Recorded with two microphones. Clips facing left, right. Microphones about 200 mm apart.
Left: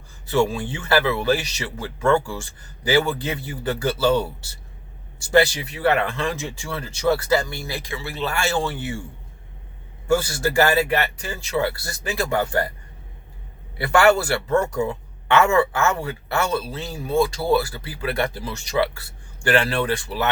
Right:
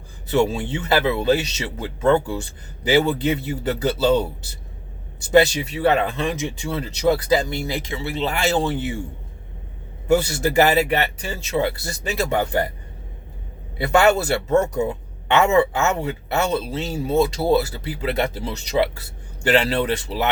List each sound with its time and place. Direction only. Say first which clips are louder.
0.3 s speech: right 1 dB; 20° right (ahead or behind)
10.1 s speech: right 2 dB; 20° right (ahead or behind)
13.7 s speech: even; 20° right (ahead or behind)